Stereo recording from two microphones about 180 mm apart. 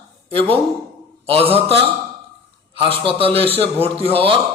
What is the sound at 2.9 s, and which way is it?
A man's voice, 30° right (ahead or behind).